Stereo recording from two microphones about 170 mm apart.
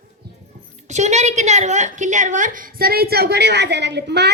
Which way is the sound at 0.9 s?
40° right (ahead or behind).